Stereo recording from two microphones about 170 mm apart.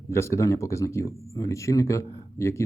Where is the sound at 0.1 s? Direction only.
15° left (ahead or behind).